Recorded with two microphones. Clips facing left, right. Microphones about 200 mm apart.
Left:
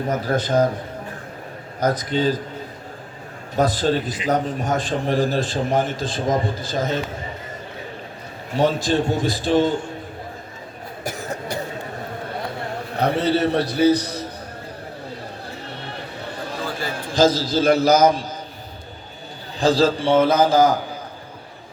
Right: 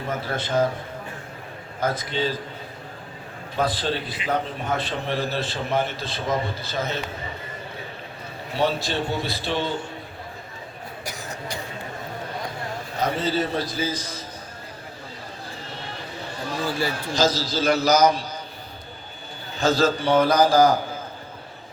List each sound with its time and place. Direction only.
0.1 s a man's voice: 40° left (ahead or behind)
1.8 s a man's voice: 40° left (ahead or behind)
3.5 s a man's voice: 45° left (ahead or behind)
8.5 s a man's voice: 45° left (ahead or behind)
11.0 s a sound: 55° left (ahead or behind)
13.0 s a man's voice: 65° left (ahead or behind)
15.4 s a sound: 60° left (ahead or behind)
16.9 s a man's voice: 50° left (ahead or behind)
19.5 s a man's voice: 30° left (ahead or behind)